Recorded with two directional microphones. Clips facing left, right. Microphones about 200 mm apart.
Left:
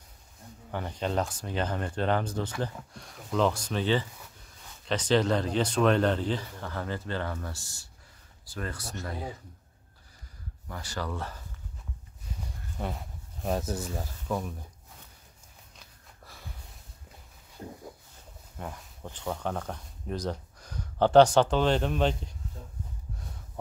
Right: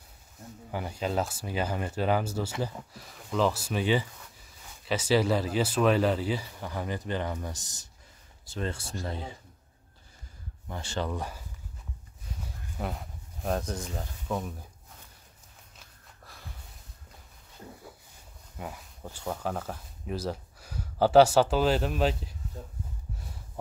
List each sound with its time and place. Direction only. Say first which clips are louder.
0.7 s speech: even; 10° right (ahead or behind); by 9.3 s 25° right (ahead or behind)
10.7 s speech: right 3 dB; 25° right (ahead or behind)
12.7 s speech: even; centre (ahead or behind)
16.3 s snort: left 1 dB; centre (ahead or behind)
18.6 s speech: even; 5° right (ahead or behind)